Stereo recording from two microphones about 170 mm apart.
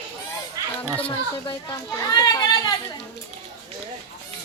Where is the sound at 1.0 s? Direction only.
25° left (ahead or behind).